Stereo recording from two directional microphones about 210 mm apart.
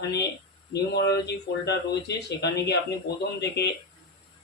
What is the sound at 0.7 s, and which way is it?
Speech, 50° left (ahead or behind).